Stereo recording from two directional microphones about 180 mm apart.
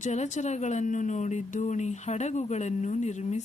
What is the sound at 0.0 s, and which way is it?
Speech, 40° left (ahead or behind).